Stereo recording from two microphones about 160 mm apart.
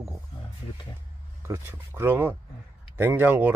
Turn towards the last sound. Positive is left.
turn(degrees=-10)  # may be behind; listen again after turning